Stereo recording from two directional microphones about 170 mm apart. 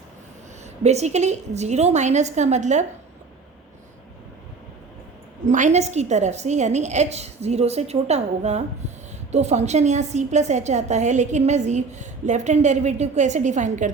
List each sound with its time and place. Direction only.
0.6 s a woman's voice: 40° right (ahead or behind)
5.5 s a woman's voice: 45° right (ahead or behind)